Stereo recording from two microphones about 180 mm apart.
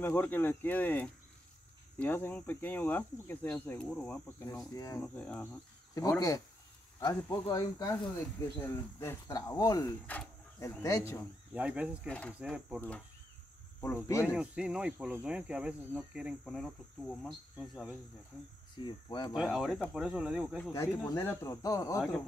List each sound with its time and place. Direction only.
0.0 s speech: 10° left (ahead or behind)
4.7 s speech: 20° left (ahead or behind)
5.9 s speech: 20° left (ahead or behind)
11.5 s speech: 5° right (ahead or behind)
12.1 s speech: 5° left (ahead or behind)
12.4 s speech: 5° right (ahead or behind)
14.2 s speech: 5° right (ahead or behind)
18.8 s speech: 25° left (ahead or behind)
19.3 s speech: centre (ahead or behind)
20.7 s speech: 15° left (ahead or behind)